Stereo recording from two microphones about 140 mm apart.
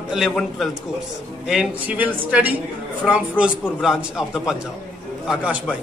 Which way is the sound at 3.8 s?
Centre (ahead or behind).